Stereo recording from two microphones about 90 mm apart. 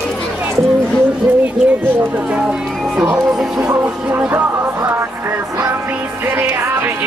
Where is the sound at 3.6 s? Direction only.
25° right (ahead or behind).